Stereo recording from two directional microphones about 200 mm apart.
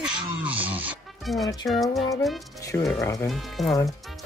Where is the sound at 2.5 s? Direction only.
15° left (ahead or behind).